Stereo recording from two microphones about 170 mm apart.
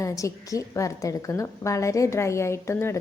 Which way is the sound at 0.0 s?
20° left (ahead or behind).